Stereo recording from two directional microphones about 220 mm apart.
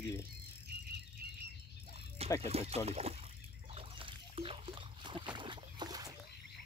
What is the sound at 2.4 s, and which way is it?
Speech, 30° right (ahead or behind).